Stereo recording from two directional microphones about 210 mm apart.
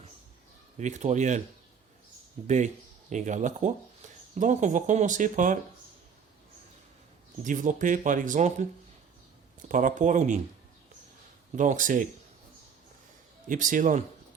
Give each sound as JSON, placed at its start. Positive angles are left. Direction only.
{"t": 0.8, "sound": "speech", "side_deg": -35}
{"t": 2.4, "sound": "speech", "side_deg": -30}
{"t": 7.4, "sound": "speech", "side_deg": -40}
{"t": 11.5, "sound": "speech", "side_deg": -40}
{"t": 13.5, "sound": "speech", "side_deg": -40}